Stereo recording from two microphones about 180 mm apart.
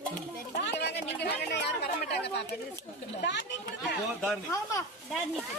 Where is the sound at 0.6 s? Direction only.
70° left (ahead or behind).